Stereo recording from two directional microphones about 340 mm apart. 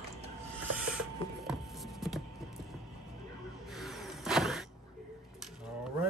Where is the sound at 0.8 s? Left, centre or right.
Centre.